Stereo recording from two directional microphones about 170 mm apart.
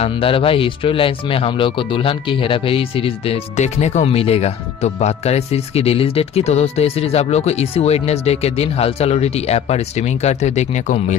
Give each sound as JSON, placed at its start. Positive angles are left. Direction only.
{"t": 0.0, "sound": "speech", "side_deg": 30}